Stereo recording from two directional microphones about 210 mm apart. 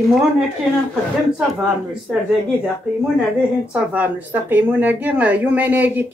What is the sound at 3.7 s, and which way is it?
A woman's voice, 10° right (ahead or behind).